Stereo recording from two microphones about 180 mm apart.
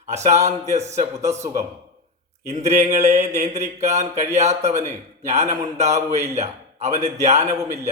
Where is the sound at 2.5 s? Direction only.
40° right (ahead or behind).